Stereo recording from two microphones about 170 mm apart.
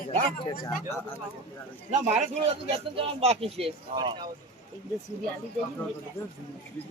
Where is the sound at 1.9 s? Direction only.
40° right (ahead or behind).